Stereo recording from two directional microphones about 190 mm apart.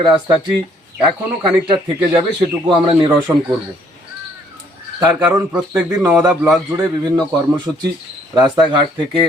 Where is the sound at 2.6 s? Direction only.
25° right (ahead or behind).